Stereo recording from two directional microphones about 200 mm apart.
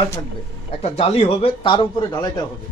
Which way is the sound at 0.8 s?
30° left (ahead or behind).